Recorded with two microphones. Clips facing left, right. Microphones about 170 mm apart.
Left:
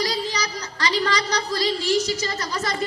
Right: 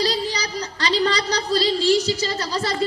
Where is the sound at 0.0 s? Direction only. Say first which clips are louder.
Right 2 dB; 35° right (ahead or behind).